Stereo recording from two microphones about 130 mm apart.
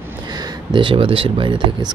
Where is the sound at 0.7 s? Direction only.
40° right (ahead or behind).